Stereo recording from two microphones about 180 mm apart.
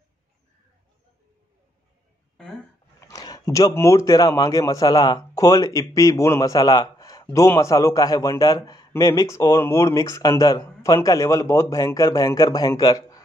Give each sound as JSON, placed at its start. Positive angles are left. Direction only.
{"t": 3.0, "sound": "speech", "side_deg": 20}